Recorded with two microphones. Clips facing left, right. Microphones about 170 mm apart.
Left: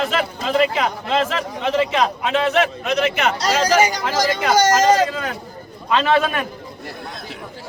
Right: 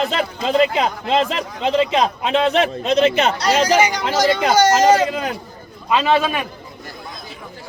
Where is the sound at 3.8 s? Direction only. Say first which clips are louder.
Even; 40° left (ahead or behind).